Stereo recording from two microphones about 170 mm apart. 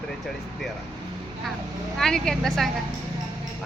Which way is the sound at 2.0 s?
5° left (ahead or behind).